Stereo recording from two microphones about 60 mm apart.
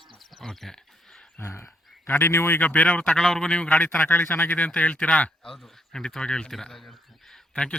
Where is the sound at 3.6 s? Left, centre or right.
Left.